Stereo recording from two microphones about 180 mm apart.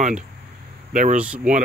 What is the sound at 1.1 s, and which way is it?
Speech, 5° right (ahead or behind).